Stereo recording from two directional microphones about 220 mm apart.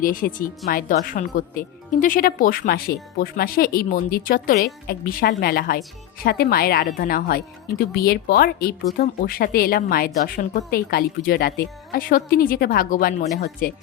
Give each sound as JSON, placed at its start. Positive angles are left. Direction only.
{"t": 0.0, "sound": "a woman's voice", "side_deg": 40}